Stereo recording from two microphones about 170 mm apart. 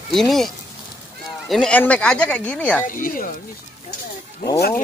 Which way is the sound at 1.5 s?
5° left (ahead or behind).